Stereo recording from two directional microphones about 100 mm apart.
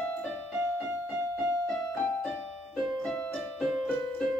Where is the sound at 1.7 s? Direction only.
30° left (ahead or behind).